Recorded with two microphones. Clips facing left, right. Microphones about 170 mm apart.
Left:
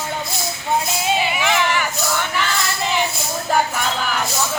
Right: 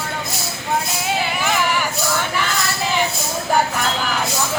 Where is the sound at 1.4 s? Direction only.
5° right (ahead or behind).